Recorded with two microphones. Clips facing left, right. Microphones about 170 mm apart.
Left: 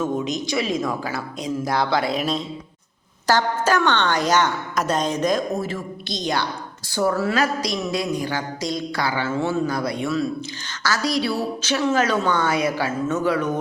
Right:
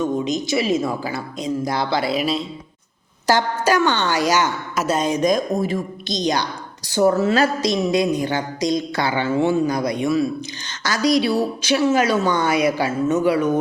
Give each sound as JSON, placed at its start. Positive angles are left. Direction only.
{"t": 0.0, "sound": "a woman's voice", "side_deg": 0}